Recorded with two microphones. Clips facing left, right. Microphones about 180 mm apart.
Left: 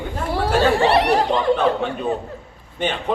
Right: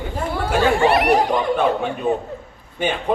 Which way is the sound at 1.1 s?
10° right (ahead or behind).